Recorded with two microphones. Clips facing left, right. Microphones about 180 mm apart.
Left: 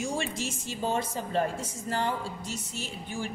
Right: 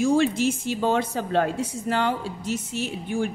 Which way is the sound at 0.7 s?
70° right (ahead or behind).